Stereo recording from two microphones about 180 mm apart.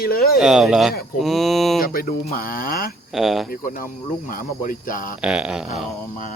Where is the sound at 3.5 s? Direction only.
50° left (ahead or behind).